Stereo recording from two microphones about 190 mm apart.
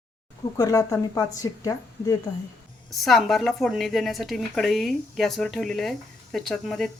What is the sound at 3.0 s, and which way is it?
Speech, centre (ahead or behind).